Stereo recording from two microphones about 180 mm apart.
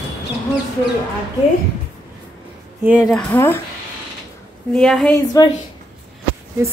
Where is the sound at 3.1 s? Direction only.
10° left (ahead or behind).